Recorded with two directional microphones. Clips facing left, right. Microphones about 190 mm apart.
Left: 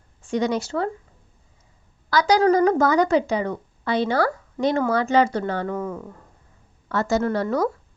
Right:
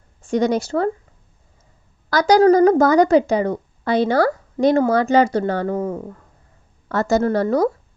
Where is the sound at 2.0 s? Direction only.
45° right (ahead or behind).